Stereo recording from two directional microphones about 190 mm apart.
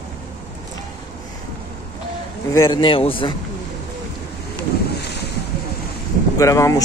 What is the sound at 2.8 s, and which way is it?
Speech, 30° left (ahead or behind).